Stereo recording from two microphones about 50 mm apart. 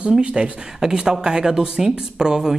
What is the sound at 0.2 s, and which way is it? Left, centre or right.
A woman's voice, right.